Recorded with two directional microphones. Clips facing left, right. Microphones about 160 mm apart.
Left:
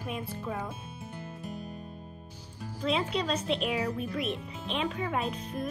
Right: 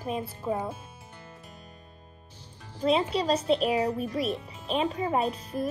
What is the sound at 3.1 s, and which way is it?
Speech, 30° right (ahead or behind).